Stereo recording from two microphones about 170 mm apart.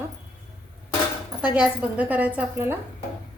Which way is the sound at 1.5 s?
5° right (ahead or behind).